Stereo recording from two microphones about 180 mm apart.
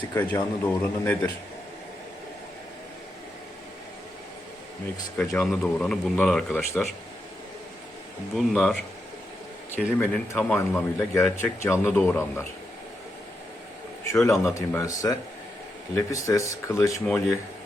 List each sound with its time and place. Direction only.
0.1 s speech: 10° left (ahead or behind)
5.1 s speech: 10° left (ahead or behind)
8.4 s speech: 5° left (ahead or behind)
14.1 s speech: 15° left (ahead or behind)
17.1 s speech: 5° left (ahead or behind)